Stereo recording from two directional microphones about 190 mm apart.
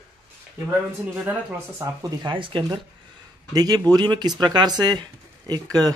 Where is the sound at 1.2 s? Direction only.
15° right (ahead or behind).